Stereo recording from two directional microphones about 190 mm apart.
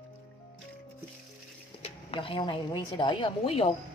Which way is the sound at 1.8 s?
30° left (ahead or behind).